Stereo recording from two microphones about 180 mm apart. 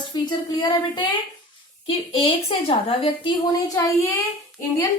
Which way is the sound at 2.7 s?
30° left (ahead or behind).